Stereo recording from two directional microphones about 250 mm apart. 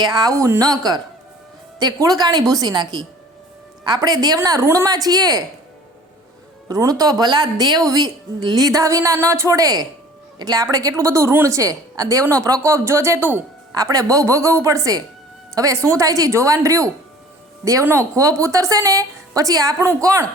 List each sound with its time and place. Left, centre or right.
0.0 s a woman's voice: centre
6.7 s a woman's voice: centre